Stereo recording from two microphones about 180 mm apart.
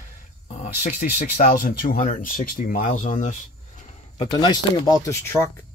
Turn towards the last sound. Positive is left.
turn(degrees=15)  # may be behind; listen again after turning